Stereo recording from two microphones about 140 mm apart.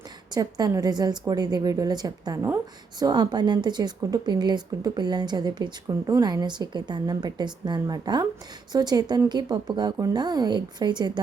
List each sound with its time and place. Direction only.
0.3 s a woman's voice: 25° right (ahead or behind)